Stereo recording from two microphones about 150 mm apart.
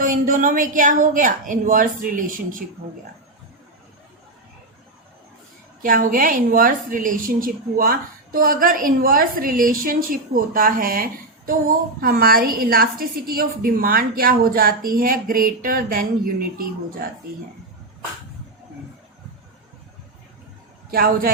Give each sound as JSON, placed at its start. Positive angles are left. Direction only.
{"t": 0.0, "sound": "speech", "side_deg": -65}
{"t": 5.8, "sound": "a woman's voice", "side_deg": -65}
{"t": 11.9, "sound": "a woman's voice", "side_deg": -85}
{"t": 20.9, "sound": "speech", "side_deg": -80}